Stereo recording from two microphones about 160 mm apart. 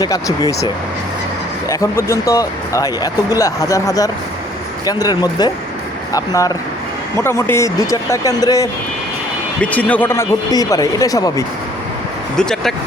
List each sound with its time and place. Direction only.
0.0 s speech: 20° left (ahead or behind)
1.7 s speech: 20° left (ahead or behind)
9.6 s speech: 10° left (ahead or behind)
12.4 s speech: 5° left (ahead or behind)